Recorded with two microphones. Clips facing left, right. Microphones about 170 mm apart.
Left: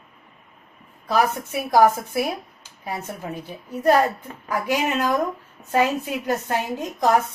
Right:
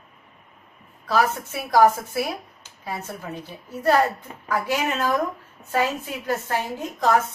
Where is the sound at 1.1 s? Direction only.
15° left (ahead or behind).